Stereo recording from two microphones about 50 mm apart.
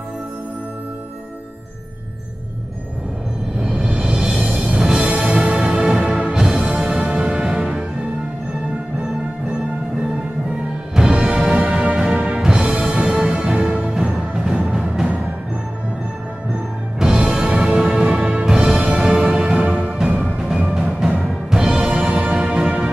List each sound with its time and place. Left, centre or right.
3.6 s music: right
11.0 s music: centre
12.4 s music: centre
17.0 s music: centre; by 20.0 s right
20.3 s music: centre